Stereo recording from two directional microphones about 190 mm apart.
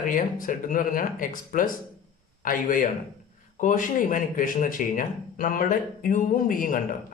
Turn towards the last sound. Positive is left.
turn(degrees=45)  # may be behind; listen again after turning